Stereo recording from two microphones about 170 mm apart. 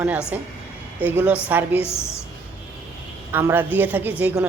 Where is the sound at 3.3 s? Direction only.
15° right (ahead or behind).